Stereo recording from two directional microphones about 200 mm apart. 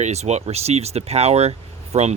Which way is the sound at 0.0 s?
35° right (ahead or behind).